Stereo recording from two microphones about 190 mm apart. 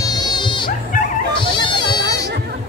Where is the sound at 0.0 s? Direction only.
20° left (ahead or behind).